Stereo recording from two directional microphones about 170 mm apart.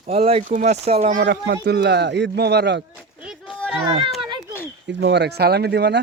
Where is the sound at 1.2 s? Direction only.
75° right (ahead or behind).